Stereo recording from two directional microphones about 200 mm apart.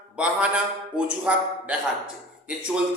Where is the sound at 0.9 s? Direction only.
5° right (ahead or behind).